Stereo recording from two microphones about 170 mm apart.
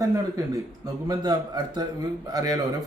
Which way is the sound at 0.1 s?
20° right (ahead or behind).